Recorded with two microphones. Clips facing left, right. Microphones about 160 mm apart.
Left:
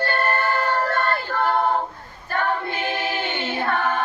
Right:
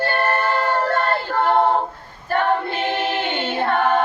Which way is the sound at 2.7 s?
25° right (ahead or behind).